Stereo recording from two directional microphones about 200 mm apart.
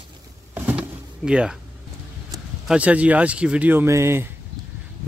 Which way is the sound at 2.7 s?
5° right (ahead or behind).